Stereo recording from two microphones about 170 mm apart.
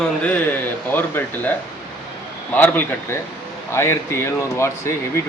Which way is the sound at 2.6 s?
10° left (ahead or behind).